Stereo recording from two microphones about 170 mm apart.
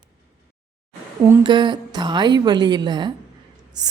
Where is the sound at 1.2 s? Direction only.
20° right (ahead or behind).